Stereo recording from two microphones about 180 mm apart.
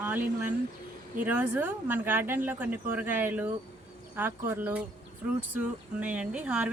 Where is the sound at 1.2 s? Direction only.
10° right (ahead or behind).